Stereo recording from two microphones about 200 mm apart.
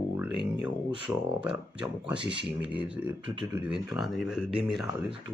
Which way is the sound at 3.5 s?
5° right (ahead or behind).